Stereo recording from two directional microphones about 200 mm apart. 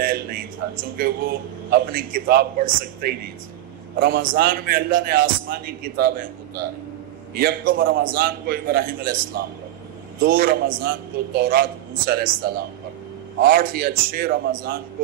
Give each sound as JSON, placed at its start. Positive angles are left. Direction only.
{"t": 0.0, "sound": "a man's voice", "side_deg": -45}